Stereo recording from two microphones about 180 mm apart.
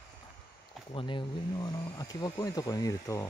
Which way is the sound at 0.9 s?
25° left (ahead or behind).